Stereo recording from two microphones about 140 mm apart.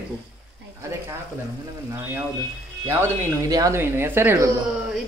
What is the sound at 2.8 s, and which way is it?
Speech, 20° right (ahead or behind).